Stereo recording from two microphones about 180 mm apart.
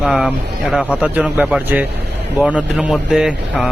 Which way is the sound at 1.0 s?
5° right (ahead or behind).